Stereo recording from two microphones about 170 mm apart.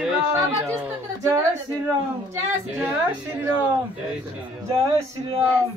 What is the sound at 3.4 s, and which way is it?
Speech, 10° right (ahead or behind).